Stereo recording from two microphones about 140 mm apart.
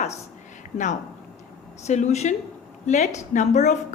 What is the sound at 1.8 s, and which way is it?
Speech, 55° left (ahead or behind).